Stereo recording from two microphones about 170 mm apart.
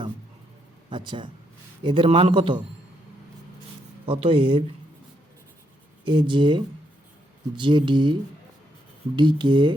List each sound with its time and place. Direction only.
0.9 s a man's voice: 30° right (ahead or behind)
4.0 s a man's voice: 30° right (ahead or behind)
6.1 s speech: 30° right (ahead or behind)